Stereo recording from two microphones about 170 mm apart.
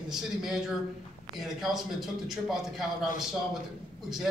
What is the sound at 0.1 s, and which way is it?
A man's voice, 5° right (ahead or behind).